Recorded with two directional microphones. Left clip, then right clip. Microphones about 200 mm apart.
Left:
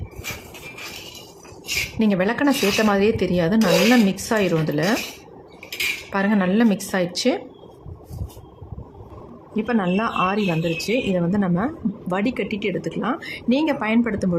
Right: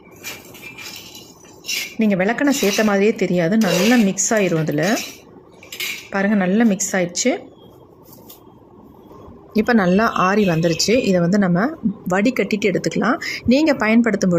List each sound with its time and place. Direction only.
2.0 s a woman's voice: 10° right (ahead or behind)
6.1 s a woman's voice: 10° right (ahead or behind)
9.6 s speech: 20° right (ahead or behind)